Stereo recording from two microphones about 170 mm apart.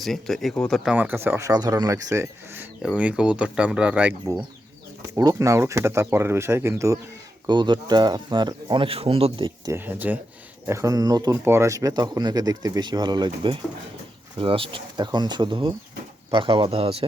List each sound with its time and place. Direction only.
0.0 s speech: centre (ahead or behind)
0.9 s speech: 10° right (ahead or behind)
5.1 s speech: 20° right (ahead or behind)
9.7 s speech: 10° right (ahead or behind); by 17.1 s 35° right (ahead or behind)